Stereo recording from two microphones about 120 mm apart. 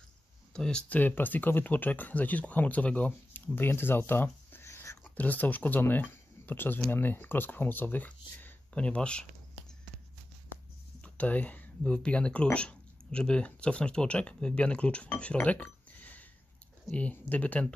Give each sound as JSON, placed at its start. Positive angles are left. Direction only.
{"t": 0.5, "sound": "speech", "side_deg": 5}
{"t": 11.0, "sound": "speech", "side_deg": 10}